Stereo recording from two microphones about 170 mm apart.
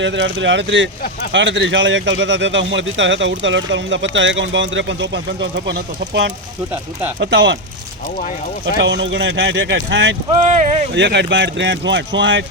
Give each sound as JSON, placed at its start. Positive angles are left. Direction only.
{"t": 0.0, "sound": "speech", "side_deg": -90}
{"t": 8.8, "sound": "speech", "side_deg": -90}
{"t": 10.4, "sound": "speech", "side_deg": -45}
{"t": 10.9, "sound": "speech", "side_deg": -90}